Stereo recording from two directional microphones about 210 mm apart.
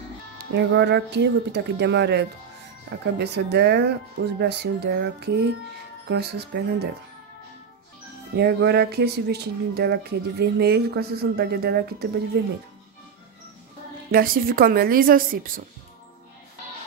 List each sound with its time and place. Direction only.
0.6 s speech: 55° right (ahead or behind)
8.4 s speech: 50° right (ahead or behind)
14.1 s speech: 45° right (ahead or behind)